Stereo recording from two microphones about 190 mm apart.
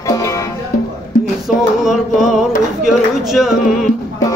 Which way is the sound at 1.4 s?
Centre (ahead or behind).